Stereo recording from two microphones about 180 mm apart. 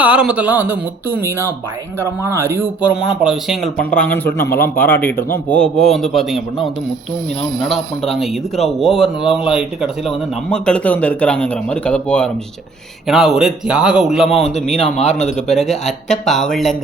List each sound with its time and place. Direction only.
0.0 s speech: 5° right (ahead or behind)
4.8 s a man's voice: 10° left (ahead or behind)